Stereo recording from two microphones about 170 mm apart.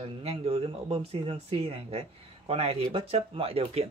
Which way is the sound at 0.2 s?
35° right (ahead or behind).